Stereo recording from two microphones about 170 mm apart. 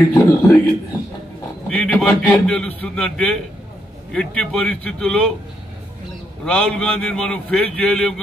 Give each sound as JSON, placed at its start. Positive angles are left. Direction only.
{"t": 0.1, "sound": "a man's voice", "side_deg": 20}
{"t": 1.7, "sound": "a man's voice", "side_deg": 10}
{"t": 6.4, "sound": "a man's voice", "side_deg": 5}